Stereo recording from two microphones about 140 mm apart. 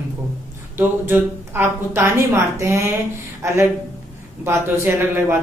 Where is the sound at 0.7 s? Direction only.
15° right (ahead or behind).